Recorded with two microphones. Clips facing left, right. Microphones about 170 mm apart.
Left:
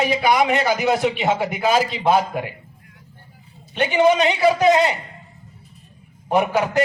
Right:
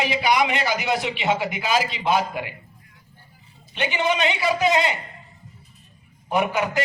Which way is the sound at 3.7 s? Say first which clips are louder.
Left 7 dB; 45° left (ahead or behind).